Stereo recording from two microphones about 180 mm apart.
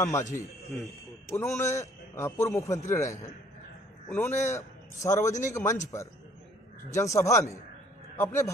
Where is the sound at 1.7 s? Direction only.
15° left (ahead or behind).